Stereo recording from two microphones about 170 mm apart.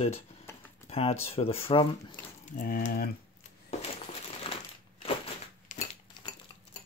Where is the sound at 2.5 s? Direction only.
55° left (ahead or behind).